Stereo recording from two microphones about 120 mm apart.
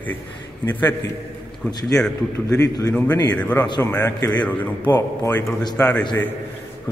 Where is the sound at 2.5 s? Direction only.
25° left (ahead or behind).